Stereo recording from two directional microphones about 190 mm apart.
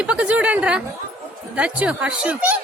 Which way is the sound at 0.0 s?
5° right (ahead or behind).